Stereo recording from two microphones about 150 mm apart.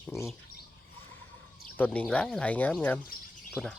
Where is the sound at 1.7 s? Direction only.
10° left (ahead or behind).